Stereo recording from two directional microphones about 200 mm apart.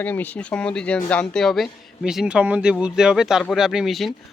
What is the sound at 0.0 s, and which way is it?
Speech, 10° left (ahead or behind).